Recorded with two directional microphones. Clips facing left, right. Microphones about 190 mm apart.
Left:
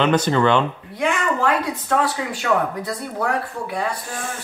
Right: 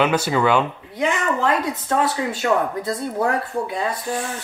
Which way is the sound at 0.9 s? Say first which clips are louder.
Even; 20° right (ahead or behind).